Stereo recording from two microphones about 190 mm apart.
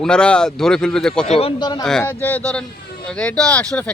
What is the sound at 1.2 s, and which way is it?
Speech, 35° left (ahead or behind).